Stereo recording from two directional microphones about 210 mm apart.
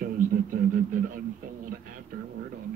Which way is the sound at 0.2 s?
40° right (ahead or behind).